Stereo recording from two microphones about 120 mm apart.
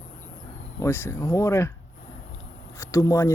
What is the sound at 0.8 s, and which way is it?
Speech, 20° left (ahead or behind).